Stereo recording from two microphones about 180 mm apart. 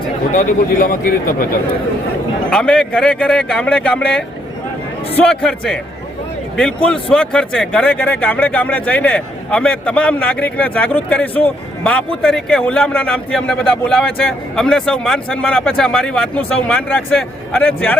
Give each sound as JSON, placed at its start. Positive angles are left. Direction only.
{"t": 0.3, "sound": "a man's voice", "side_deg": 50}
{"t": 2.5, "sound": "a man's voice", "side_deg": 5}